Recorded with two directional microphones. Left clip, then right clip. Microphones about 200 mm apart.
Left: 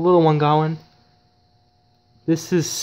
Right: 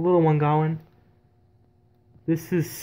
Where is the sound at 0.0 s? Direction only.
10° left (ahead or behind).